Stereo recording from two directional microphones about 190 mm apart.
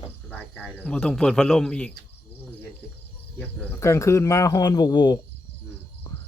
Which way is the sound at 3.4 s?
10° left (ahead or behind).